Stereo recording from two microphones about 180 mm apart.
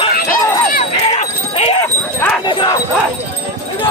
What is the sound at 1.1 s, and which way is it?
Livestock, 35° left (ahead or behind).